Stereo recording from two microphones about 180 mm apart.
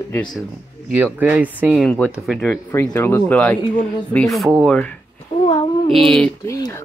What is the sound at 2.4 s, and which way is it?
Speech, 10° left (ahead or behind).